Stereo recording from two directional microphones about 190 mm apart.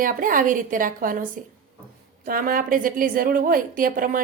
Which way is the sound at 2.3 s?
50° right (ahead or behind).